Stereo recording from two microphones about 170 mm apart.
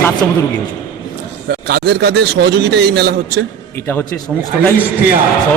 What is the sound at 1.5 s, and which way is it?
A man's voice, 65° right (ahead or behind).